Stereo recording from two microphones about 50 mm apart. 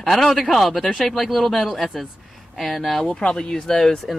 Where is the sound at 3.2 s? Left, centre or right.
Centre.